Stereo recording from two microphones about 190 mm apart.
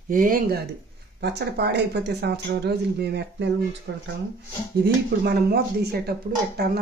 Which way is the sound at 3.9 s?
70° right (ahead or behind).